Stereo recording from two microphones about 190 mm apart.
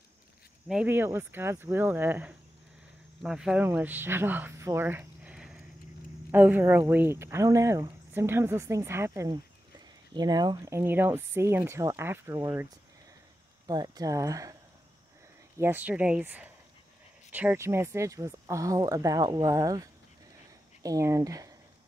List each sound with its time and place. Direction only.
0.7 s speech: 10° right (ahead or behind)
13.7 s speech: 20° right (ahead or behind)
15.6 s speech: 10° right (ahead or behind)